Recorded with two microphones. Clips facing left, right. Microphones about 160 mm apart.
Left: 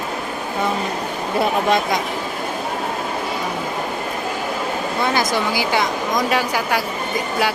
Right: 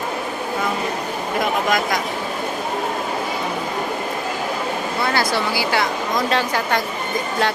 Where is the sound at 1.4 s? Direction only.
30° left (ahead or behind).